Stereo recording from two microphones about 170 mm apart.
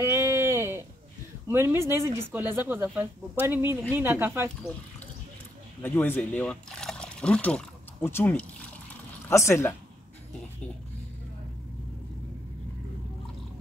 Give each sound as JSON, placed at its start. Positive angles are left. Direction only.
{"t": 0.0, "sound": "a sound", "side_deg": -15}
{"t": 1.5, "sound": "speech", "side_deg": -15}
{"t": 5.8, "sound": "speech", "side_deg": 10}